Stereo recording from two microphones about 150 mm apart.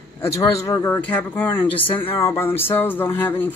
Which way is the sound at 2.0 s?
15° left (ahead or behind).